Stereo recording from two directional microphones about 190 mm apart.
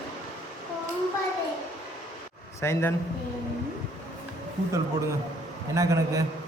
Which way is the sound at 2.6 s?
10° left (ahead or behind).